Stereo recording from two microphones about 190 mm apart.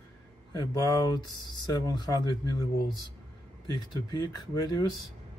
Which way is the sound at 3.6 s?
25° left (ahead or behind).